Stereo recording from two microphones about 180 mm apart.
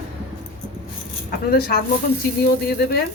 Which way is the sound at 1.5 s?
55° left (ahead or behind).